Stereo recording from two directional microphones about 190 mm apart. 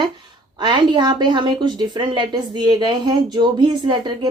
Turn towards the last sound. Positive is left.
turn(degrees=-25)  # may be behind; listen again after turning